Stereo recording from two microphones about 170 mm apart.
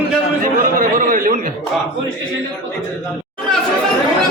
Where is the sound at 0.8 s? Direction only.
55° right (ahead or behind).